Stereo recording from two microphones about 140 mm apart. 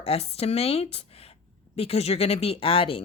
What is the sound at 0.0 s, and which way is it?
Speech, 45° left (ahead or behind).